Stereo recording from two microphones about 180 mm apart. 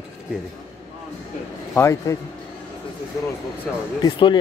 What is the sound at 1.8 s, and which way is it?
Speech, 15° left (ahead or behind).